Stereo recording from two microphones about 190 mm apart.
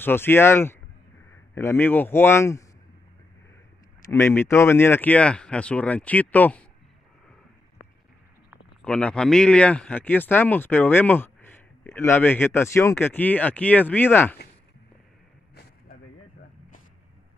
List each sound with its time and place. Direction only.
0.0 s speech: 10° left (ahead or behind)
4.1 s speech: 10° left (ahead or behind)
8.8 s speech: 5° left (ahead or behind)
15.5 s a sound: 55° left (ahead or behind)